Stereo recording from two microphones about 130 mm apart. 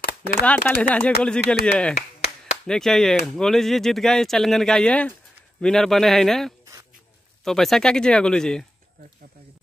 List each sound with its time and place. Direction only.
0.5 s speech: 10° left (ahead or behind)
6.6 s a sound: 25° right (ahead or behind)
7.4 s speech: centre (ahead or behind)